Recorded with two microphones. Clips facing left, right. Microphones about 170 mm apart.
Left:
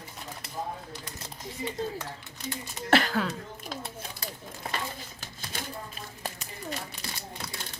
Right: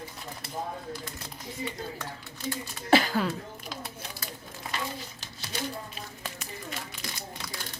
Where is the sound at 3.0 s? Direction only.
Centre (ahead or behind).